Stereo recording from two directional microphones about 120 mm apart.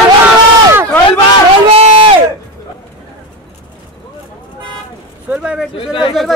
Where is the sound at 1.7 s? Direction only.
50° right (ahead or behind).